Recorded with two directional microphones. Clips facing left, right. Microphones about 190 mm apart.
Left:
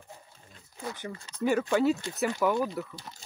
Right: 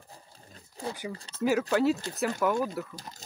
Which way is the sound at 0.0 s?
35° right (ahead or behind).